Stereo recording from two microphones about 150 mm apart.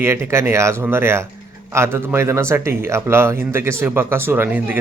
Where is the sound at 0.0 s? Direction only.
15° right (ahead or behind).